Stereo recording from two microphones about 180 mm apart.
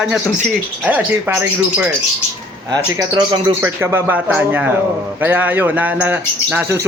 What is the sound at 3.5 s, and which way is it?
A man's voice, 15° right (ahead or behind).